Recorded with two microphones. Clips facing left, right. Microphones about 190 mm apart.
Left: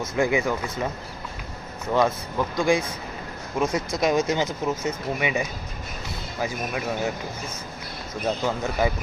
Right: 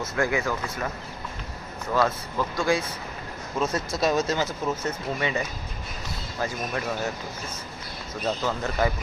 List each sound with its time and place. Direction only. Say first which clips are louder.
0.2 s speech: left 3 dB; 15° left (ahead or behind)
1.9 s speech: left 2 dB; 20° left (ahead or behind)
8.2 s speech: left 2 dB; 15° left (ahead or behind)